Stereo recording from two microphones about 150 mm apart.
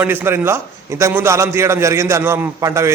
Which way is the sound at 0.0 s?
15° right (ahead or behind).